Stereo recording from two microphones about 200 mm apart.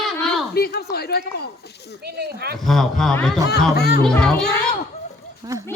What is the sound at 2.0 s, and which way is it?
Speech, 50° right (ahead or behind).